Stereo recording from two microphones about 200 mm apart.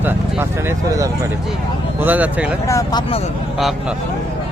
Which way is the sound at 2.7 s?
15° left (ahead or behind).